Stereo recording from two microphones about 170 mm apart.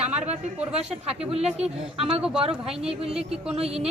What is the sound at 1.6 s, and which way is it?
A woman's voice, 35° right (ahead or behind).